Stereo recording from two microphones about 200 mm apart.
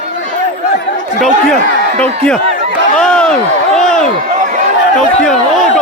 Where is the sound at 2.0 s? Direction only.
5° left (ahead or behind).